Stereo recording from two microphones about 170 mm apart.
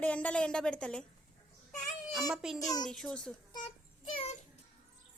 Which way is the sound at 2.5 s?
20° left (ahead or behind).